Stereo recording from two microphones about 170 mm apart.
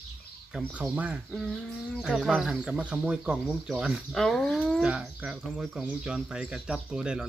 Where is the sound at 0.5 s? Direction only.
5° right (ahead or behind).